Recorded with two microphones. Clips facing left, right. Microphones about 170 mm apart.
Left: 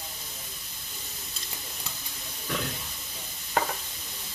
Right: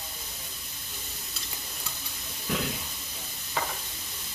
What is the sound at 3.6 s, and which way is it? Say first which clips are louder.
Stir: left 5 dB; 60° left (ahead or behind).